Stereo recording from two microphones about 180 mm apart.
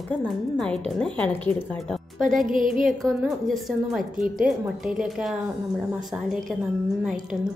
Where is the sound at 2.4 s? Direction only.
45° right (ahead or behind).